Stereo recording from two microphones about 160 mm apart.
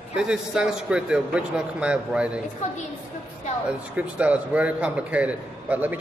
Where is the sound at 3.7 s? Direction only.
10° right (ahead or behind).